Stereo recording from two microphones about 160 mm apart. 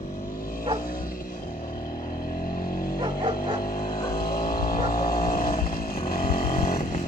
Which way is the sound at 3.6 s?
65° left (ahead or behind).